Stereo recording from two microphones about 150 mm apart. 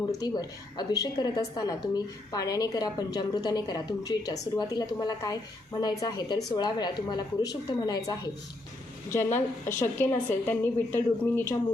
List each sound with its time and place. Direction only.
0.1 s a woman's voice: 25° left (ahead or behind)